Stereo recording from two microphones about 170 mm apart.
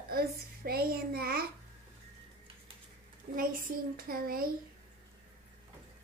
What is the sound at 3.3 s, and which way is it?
A child's voice, 55° right (ahead or behind).